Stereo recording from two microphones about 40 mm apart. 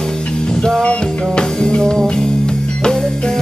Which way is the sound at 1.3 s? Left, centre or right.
Left.